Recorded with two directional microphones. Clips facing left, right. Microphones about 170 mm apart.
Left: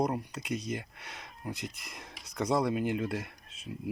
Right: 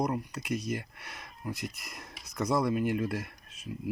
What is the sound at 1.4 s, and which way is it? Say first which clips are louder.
Speech: right 2 dB; 25° left (ahead or behind).